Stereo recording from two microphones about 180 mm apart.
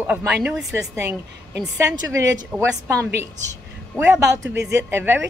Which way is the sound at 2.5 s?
Centre (ahead or behind).